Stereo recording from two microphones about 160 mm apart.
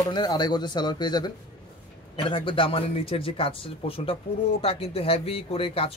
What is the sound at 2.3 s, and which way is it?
A man's voice, 30° left (ahead or behind).